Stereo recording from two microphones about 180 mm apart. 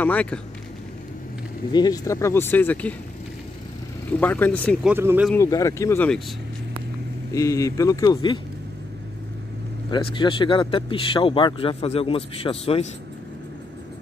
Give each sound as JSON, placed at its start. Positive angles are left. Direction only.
{"t": 0.0, "sound": "speech", "side_deg": 10}
{"t": 1.7, "sound": "speech", "side_deg": 20}
{"t": 4.2, "sound": "speech", "side_deg": 10}
{"t": 4.8, "sound": "speech", "side_deg": -10}
{"t": 5.3, "sound": "speech", "side_deg": 15}
{"t": 7.3, "sound": "speech", "side_deg": 15}
{"t": 9.8, "sound": "speech", "side_deg": 25}